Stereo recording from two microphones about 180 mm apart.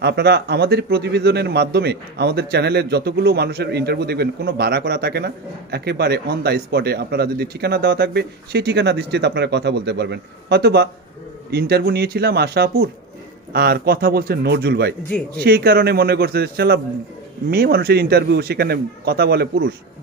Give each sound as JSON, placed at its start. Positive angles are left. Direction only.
{"t": 0.0, "sound": "a man's voice", "side_deg": -65}
{"t": 15.0, "sound": "speech", "side_deg": 5}
{"t": 15.4, "sound": "a man's voice", "side_deg": -60}